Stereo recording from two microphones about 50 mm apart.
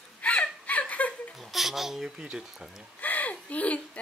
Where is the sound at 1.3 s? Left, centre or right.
Centre.